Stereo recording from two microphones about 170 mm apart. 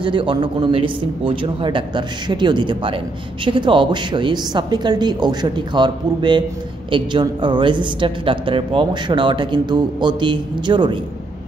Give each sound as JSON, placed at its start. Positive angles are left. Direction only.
{"t": 0.0, "sound": "a man's voice", "side_deg": -30}